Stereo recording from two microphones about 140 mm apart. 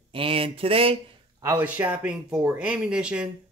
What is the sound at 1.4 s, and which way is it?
Speech, 20° right (ahead or behind).